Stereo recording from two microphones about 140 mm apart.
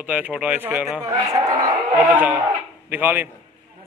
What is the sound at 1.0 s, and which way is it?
Speech, 25° right (ahead or behind).